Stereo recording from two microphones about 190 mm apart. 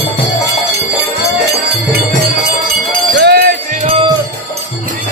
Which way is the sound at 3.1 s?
60° right (ahead or behind).